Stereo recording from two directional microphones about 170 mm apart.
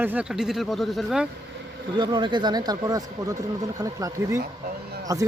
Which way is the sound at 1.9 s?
25° right (ahead or behind).